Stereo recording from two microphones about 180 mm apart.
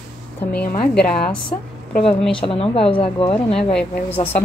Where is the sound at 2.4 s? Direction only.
30° left (ahead or behind).